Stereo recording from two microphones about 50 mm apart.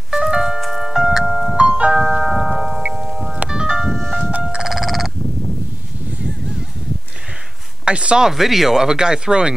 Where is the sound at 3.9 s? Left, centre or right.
Centre.